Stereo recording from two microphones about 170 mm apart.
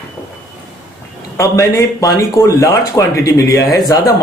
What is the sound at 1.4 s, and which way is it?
A man's voice, 15° left (ahead or behind).